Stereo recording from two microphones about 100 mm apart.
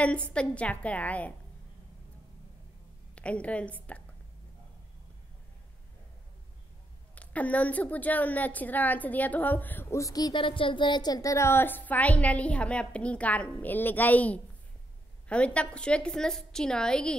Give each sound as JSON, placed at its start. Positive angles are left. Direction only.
{"t": 0.0, "sound": "a woman's voice", "side_deg": 10}
{"t": 3.2, "sound": "a woman's voice", "side_deg": 10}
{"t": 7.2, "sound": "a woman's voice", "side_deg": 15}
{"t": 9.9, "sound": "speech", "side_deg": 35}
{"t": 10.3, "sound": "a woman's voice", "side_deg": 60}